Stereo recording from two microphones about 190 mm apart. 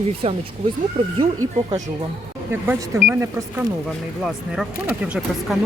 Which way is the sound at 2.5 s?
10° right (ahead or behind).